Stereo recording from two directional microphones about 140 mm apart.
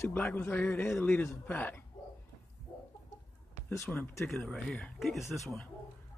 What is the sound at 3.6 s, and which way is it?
Speech, 15° left (ahead or behind).